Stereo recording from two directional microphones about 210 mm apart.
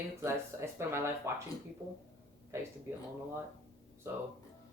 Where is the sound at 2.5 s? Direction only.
10° right (ahead or behind).